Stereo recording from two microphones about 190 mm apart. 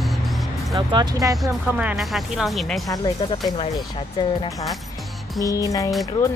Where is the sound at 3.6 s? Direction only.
30° left (ahead or behind).